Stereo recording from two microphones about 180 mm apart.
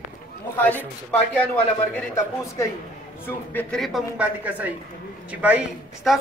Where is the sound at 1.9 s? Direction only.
15° left (ahead or behind); by 6.2 s 5° right (ahead or behind).